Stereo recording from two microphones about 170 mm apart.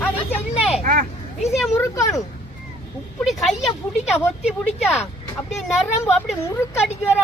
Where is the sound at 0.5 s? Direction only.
5° right (ahead or behind).